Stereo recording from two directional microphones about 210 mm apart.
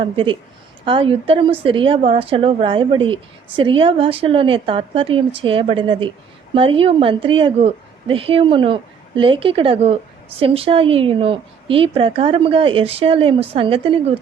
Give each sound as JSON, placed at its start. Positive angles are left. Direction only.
{"t": 0.0, "sound": "a woman's voice", "side_deg": -25}